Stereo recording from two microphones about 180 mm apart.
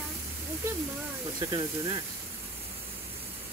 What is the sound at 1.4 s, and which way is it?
Speech, 25° right (ahead or behind).